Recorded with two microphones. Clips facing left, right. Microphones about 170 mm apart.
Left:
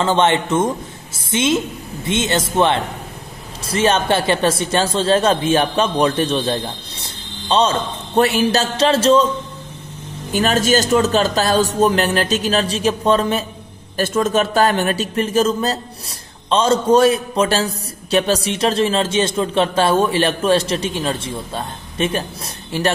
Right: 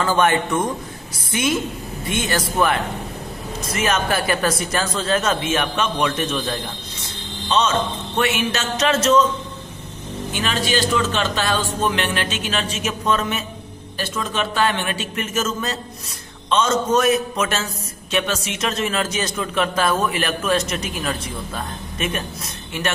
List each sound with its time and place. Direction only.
0.0 s a woman's voice: 25° left (ahead or behind)
10.3 s a man's voice: 40° left (ahead or behind)
13.9 s a man's voice: 45° left (ahead or behind)